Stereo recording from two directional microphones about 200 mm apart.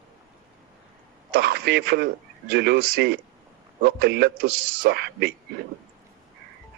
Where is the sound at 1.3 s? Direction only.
55° right (ahead or behind).